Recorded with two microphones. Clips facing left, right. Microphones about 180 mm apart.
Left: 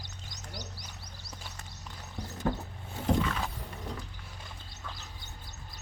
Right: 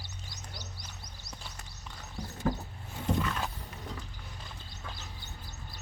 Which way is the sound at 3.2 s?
Centre (ahead or behind).